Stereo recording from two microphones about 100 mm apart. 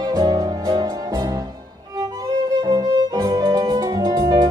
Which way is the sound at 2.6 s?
45° right (ahead or behind).